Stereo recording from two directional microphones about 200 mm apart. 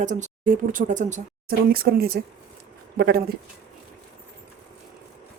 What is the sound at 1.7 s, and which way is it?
Speech, 50° right (ahead or behind).